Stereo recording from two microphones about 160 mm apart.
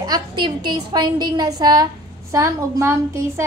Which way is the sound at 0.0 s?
25° right (ahead or behind).